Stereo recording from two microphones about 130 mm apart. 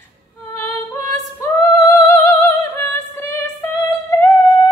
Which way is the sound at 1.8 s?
25° left (ahead or behind).